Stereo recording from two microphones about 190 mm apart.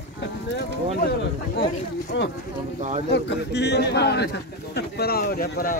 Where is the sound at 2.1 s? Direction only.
70° left (ahead or behind).